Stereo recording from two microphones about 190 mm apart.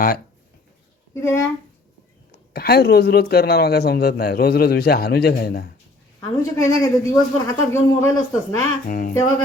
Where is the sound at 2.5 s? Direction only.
55° left (ahead or behind).